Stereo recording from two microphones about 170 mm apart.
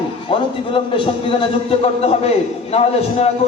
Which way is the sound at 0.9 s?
30° left (ahead or behind).